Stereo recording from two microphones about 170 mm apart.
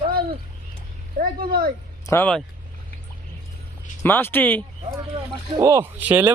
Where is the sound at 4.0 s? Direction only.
15° left (ahead or behind).